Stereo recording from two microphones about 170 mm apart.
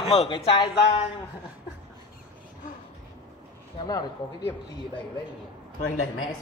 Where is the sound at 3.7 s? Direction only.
25° left (ahead or behind).